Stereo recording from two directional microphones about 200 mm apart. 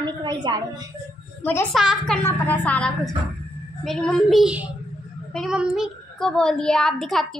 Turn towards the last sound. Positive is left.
turn(degrees=0)  # may be behind; listen again after turning